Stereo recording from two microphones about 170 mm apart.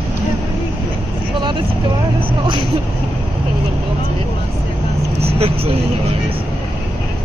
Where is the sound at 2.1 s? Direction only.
30° right (ahead or behind).